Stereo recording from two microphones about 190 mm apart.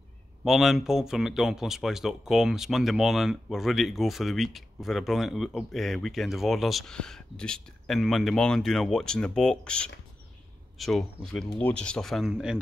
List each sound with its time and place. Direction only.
0.4 s speech: centre (ahead or behind)